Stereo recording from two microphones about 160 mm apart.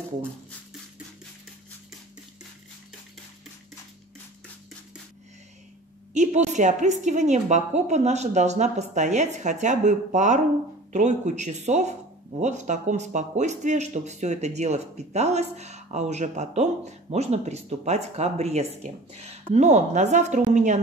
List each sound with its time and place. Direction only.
6.1 s a woman's voice: 50° right (ahead or behind)